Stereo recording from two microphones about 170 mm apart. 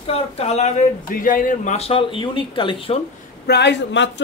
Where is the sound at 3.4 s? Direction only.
85° left.